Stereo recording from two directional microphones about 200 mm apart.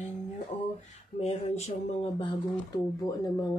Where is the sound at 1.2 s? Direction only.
35° left (ahead or behind).